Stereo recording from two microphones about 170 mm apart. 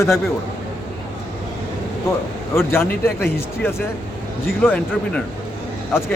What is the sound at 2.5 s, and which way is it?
Speech, 15° left (ahead or behind).